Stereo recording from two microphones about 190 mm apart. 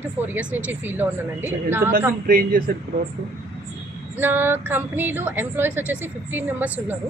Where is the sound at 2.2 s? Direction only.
50° right (ahead or behind).